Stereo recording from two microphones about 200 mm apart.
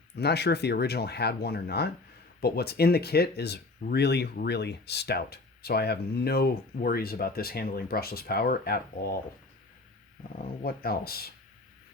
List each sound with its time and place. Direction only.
0.2 s speech: 55° left (ahead or behind)
10.3 s speech: 50° left (ahead or behind)